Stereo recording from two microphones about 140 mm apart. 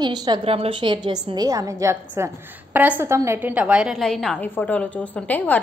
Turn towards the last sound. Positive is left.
turn(degrees=10)  # may be behind; listen again after turning